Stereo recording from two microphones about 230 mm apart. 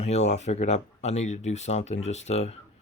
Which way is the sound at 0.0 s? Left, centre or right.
Left.